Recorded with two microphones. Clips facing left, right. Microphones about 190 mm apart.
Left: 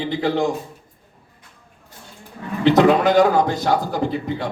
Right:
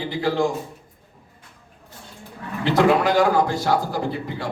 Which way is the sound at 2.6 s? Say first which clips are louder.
Left 4 dB; 20° left (ahead or behind).